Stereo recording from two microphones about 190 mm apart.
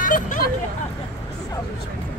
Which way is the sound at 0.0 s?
45° left (ahead or behind).